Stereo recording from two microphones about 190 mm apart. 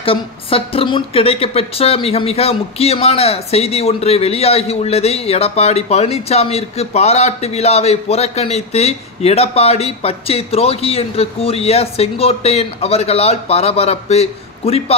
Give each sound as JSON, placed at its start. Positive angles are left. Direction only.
{"t": 0.0, "sound": "a woman's voice", "side_deg": 30}